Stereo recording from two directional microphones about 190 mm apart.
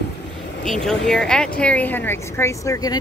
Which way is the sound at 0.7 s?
5° left (ahead or behind).